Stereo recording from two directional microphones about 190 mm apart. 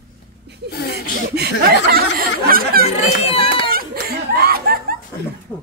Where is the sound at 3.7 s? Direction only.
50° right (ahead or behind).